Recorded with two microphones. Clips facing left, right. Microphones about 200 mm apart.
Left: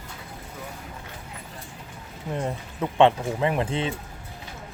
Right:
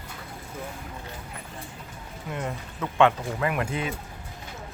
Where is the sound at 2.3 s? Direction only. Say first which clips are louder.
Left 3 dB; 30° left (ahead or behind).